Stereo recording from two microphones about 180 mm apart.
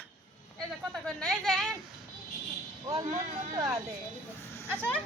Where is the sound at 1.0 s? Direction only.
5° left (ahead or behind).